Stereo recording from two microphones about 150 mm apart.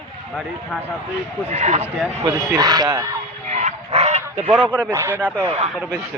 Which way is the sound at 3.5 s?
45° right (ahead or behind).